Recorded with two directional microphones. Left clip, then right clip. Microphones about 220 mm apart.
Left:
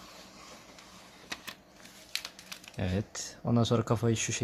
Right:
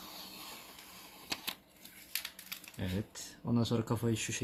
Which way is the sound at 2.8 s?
30° left (ahead or behind).